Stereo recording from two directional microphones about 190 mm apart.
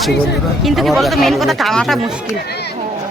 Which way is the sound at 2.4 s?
60° left (ahead or behind).